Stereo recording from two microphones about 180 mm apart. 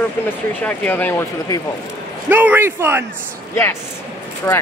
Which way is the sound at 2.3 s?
10° right (ahead or behind).